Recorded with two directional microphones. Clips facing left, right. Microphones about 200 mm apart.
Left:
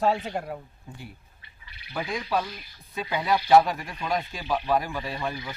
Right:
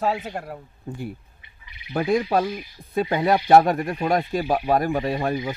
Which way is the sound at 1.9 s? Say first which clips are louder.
Right 8 dB; 50° right (ahead or behind).